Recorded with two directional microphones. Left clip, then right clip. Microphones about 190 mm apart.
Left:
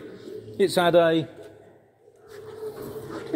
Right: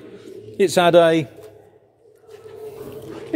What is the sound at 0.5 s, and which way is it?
Speech, 25° right (ahead or behind).